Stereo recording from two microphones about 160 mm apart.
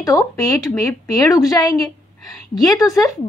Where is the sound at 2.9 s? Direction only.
20° left (ahead or behind).